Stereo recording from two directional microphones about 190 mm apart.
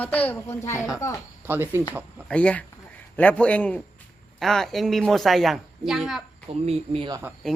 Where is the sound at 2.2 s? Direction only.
5° left (ahead or behind).